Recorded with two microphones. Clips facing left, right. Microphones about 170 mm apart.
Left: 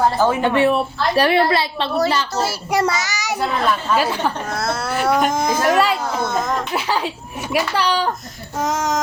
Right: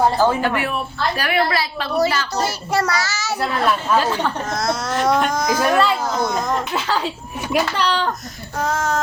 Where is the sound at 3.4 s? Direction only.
5° left (ahead or behind).